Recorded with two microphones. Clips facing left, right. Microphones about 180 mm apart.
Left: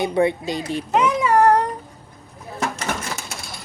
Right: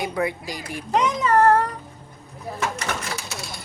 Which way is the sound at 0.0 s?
25° left (ahead or behind).